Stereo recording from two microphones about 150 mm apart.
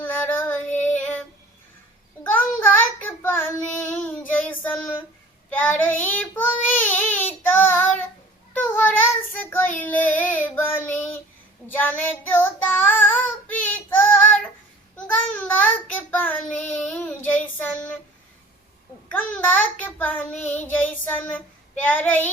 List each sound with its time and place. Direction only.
0.0 s child singing: 10° left (ahead or behind)
2.2 s child singing: 10° left (ahead or behind)
15.5 s child singing: 10° left (ahead or behind)
16.6 s child singing: 55° left (ahead or behind)
17.0 s child singing: 10° left (ahead or behind)
17.6 s a sound: 10° left (ahead or behind)
19.1 s child singing: 10° left (ahead or behind)